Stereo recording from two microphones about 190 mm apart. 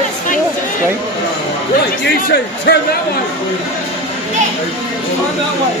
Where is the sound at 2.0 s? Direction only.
60° left (ahead or behind).